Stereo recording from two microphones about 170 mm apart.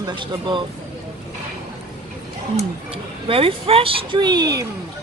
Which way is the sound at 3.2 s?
35° right (ahead or behind).